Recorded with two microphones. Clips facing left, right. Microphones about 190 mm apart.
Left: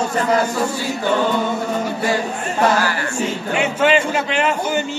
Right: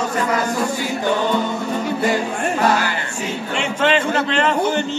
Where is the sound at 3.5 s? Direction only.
10° left (ahead or behind).